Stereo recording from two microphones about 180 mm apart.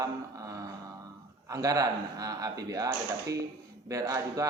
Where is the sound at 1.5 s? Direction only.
20° right (ahead or behind).